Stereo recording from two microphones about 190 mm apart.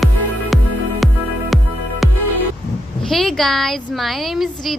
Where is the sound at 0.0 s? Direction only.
Centre (ahead or behind).